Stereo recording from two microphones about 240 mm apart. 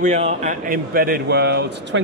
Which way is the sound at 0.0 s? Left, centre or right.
Right.